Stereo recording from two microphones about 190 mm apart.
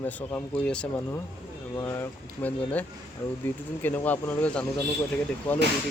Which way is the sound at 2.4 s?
10° left (ahead or behind).